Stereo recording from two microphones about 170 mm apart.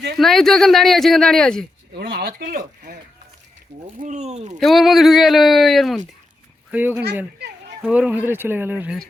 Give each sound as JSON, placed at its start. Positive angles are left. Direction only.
{"t": 0.2, "sound": "speech", "side_deg": 0}
{"t": 2.0, "sound": "speech", "side_deg": -70}
{"t": 4.0, "sound": "speech", "side_deg": -40}
{"t": 4.6, "sound": "speech", "side_deg": 0}